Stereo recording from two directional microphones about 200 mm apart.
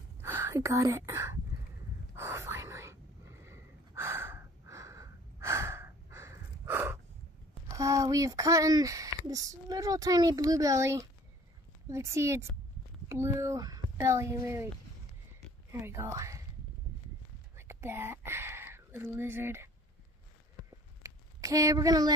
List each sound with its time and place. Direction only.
0.2 s speech: 10° right (ahead or behind)
2.1 s whispering: 15° right (ahead or behind)
3.4 s gasp: 10° right (ahead or behind)
7.7 s speech: 15° right (ahead or behind)
15.7 s speech: 10° right (ahead or behind)
17.6 s speech: 10° right (ahead or behind)
21.0 s a sound: 15° right (ahead or behind)